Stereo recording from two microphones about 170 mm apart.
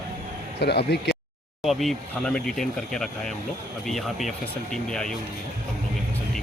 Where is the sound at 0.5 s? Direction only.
75° left (ahead or behind).